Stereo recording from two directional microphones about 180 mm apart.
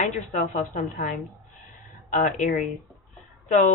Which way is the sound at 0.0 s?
45° left (ahead or behind).